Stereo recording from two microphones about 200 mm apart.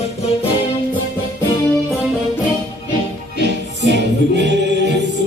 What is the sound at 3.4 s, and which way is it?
Music, 60° right (ahead or behind).